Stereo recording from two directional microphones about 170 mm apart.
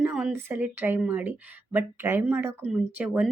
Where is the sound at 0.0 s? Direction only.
5° right (ahead or behind).